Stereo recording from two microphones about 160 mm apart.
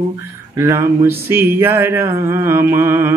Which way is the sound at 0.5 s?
15° right (ahead or behind).